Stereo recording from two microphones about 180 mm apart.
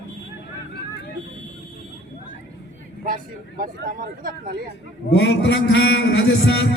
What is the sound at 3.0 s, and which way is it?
Speech, 50° right (ahead or behind).